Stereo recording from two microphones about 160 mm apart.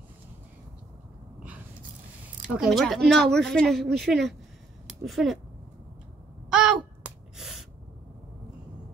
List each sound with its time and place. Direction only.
2.2 s a woman's voice: 5° right (ahead or behind)
6.5 s a sound: 5° right (ahead or behind)
7.3 s gasp: centre (ahead or behind)